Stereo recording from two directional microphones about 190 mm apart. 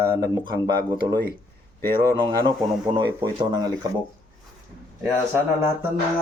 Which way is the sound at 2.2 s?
25° right (ahead or behind).